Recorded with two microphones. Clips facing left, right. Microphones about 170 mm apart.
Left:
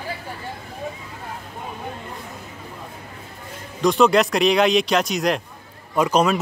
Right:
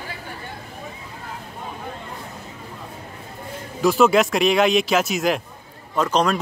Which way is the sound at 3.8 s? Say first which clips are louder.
Even; 5° right (ahead or behind).